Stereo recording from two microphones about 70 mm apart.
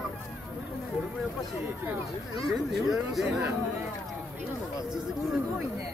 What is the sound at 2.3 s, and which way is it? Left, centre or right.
Speech, centre.